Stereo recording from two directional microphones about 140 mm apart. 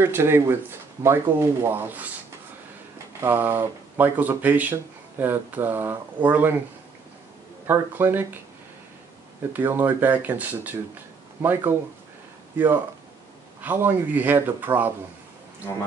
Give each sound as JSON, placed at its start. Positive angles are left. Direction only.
{"t": 0.0, "sound": "speech", "side_deg": -15}
{"t": 3.2, "sound": "speech", "side_deg": -15}
{"t": 7.6, "sound": "speech", "side_deg": -15}
{"t": 9.5, "sound": "speech", "side_deg": -15}
{"t": 13.6, "sound": "speech", "side_deg": -15}